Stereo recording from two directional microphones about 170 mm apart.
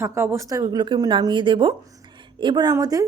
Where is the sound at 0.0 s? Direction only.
15° right (ahead or behind).